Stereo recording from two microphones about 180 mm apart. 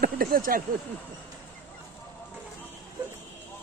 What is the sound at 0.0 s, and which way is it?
Speech, 55° right (ahead or behind).